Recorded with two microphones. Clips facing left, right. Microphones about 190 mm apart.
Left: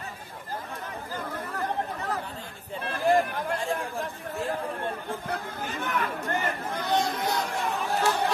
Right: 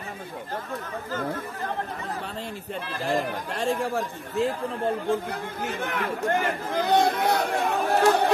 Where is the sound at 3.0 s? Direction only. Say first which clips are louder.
Left 4 dB; 70° right (ahead or behind).